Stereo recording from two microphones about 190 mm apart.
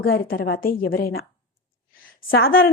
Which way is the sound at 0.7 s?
50° left (ahead or behind).